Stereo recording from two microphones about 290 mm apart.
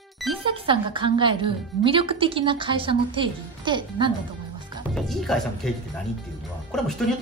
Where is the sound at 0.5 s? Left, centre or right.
Centre.